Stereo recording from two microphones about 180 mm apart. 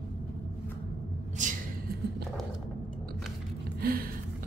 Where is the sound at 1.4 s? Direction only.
45° right (ahead or behind).